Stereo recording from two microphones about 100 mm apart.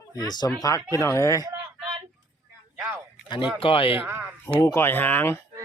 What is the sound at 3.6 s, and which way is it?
Speech, 65° left (ahead or behind).